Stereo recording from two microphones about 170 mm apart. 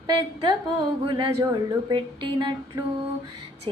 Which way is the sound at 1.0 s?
30° right (ahead or behind).